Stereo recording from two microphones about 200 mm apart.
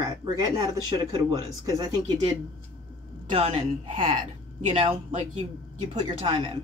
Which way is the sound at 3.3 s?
30° right (ahead or behind).